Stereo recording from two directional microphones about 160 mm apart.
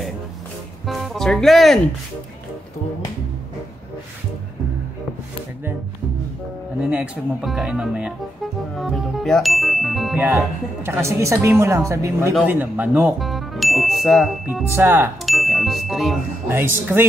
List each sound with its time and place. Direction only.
0.8 s speech: centre (ahead or behind)
6.8 s speech: 5° right (ahead or behind)
10.9 s a woman's voice: 15° right (ahead or behind); by 14.4 s centre (ahead or behind)
14.5 s a woman's voice: 15° right (ahead or behind)
15.2 s ding: centre (ahead or behind)
16.4 s a woman's voice: 15° right (ahead or behind)